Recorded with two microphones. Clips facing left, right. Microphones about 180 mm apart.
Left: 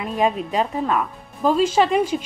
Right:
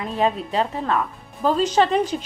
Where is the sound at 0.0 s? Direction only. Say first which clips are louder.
Left 1 dB; 15° left (ahead or behind).